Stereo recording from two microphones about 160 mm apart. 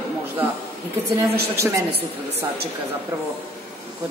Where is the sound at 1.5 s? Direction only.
20° right (ahead or behind).